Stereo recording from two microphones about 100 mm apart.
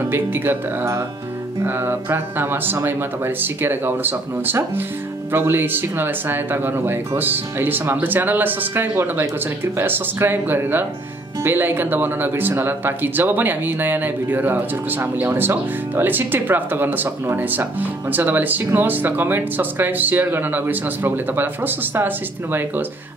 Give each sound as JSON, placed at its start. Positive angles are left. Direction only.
{"t": 0.0, "sound": "speech", "side_deg": -20}